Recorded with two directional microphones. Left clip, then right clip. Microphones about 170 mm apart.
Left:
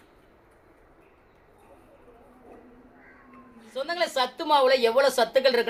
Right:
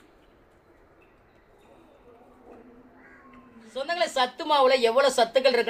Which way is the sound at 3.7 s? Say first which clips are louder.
Right 1 dB; 15° left (ahead or behind).